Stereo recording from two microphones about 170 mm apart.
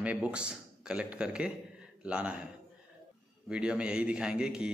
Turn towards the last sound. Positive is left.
turn(degrees=-5)  # may be behind; listen again after turning